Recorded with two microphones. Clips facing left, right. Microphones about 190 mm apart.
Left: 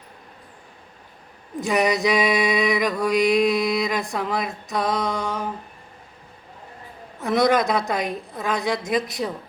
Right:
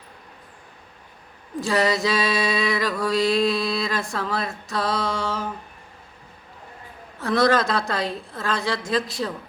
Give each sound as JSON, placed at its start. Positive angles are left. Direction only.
{"t": 1.6, "sound": "mantra", "side_deg": 20}
{"t": 7.2, "sound": "a woman's voice", "side_deg": 20}